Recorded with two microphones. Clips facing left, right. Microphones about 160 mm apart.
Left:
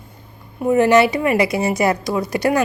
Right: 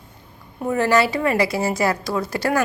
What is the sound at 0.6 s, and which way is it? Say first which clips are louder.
A woman's voice: left 5 dB; 15° left (ahead or behind).